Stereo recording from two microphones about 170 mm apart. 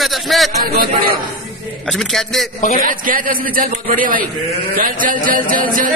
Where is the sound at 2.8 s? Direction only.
55° right (ahead or behind).